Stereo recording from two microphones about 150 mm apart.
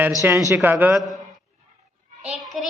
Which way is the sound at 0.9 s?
Centre (ahead or behind).